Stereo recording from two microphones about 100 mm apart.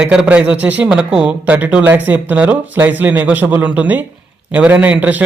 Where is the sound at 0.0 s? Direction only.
10° right (ahead or behind).